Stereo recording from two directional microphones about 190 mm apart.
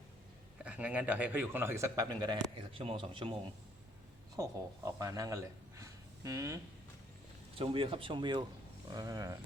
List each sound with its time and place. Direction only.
0.6 s speech: 5° right (ahead or behind); by 3.3 s 25° right (ahead or behind)
4.9 s speech: 20° right (ahead or behind)
7.6 s speech: 30° right (ahead or behind)